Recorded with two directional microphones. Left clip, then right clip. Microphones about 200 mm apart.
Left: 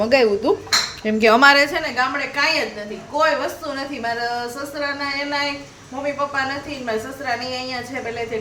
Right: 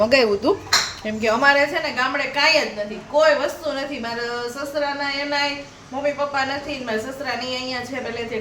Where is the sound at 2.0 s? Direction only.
Centre (ahead or behind).